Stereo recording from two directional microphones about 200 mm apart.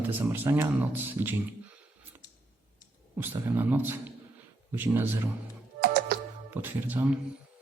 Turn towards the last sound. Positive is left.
turn(degrees=-5)  # may be behind; listen again after turning